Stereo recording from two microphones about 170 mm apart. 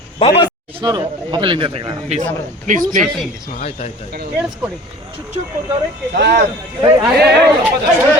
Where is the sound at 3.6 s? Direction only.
40° left (ahead or behind).